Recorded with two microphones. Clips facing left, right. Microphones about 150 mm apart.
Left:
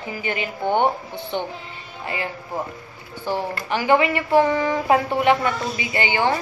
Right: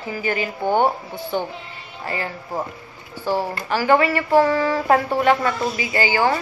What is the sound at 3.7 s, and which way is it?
A woman's voice, 20° left (ahead or behind).